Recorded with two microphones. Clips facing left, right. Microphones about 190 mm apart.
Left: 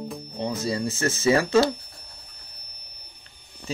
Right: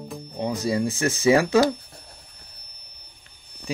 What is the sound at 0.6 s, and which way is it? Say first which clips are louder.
Speech: right 4 dB; 15° right (ahead or behind).